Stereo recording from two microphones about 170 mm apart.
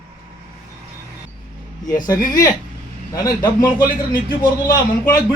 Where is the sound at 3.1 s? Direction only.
25° left (ahead or behind).